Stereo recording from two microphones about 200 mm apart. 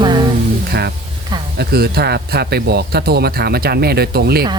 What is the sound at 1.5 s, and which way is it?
Speech, 55° right (ahead or behind).